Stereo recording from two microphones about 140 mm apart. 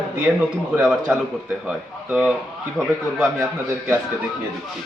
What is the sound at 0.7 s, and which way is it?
A man's voice, 5° right (ahead or behind).